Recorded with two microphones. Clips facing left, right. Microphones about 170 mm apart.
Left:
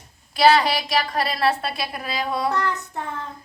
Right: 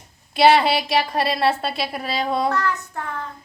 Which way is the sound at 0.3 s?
25° right (ahead or behind).